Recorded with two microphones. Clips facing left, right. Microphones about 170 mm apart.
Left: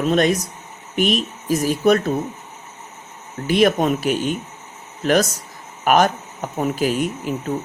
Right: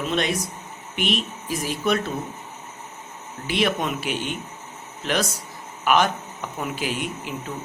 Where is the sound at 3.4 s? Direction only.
45° left (ahead or behind).